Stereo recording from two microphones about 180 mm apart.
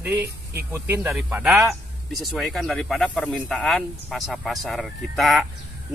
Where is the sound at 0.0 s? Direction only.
10° right (ahead or behind).